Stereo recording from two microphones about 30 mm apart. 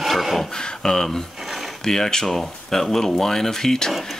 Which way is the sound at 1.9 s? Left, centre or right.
Centre.